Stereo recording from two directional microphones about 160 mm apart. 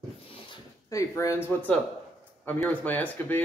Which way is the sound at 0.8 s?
20° left (ahead or behind).